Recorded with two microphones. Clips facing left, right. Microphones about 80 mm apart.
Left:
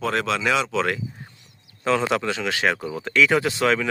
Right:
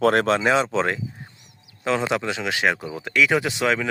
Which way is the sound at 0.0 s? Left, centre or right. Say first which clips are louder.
Right 6 dB; right.